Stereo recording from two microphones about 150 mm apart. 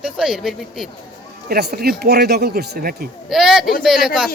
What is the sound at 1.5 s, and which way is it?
Speech, 90° right.